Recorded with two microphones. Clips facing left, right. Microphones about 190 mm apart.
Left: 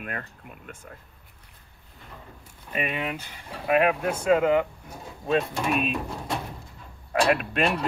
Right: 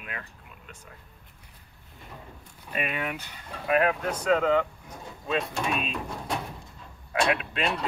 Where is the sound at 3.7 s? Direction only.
15° left (ahead or behind).